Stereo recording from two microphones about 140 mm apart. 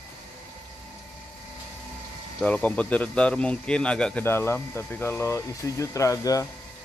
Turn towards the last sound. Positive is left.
turn(degrees=20)  # may be behind; listen again after turning